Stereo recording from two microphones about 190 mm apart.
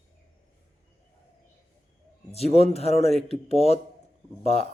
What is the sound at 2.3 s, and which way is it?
Speech, 35° left (ahead or behind).